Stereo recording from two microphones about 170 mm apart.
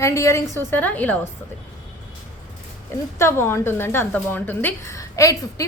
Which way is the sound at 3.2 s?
15° left (ahead or behind).